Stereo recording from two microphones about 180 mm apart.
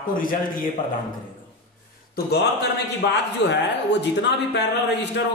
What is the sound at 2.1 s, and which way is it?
A man's voice, 60° left (ahead or behind).